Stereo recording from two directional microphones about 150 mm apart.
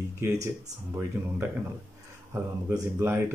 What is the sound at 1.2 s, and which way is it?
A man's voice, 15° right (ahead or behind).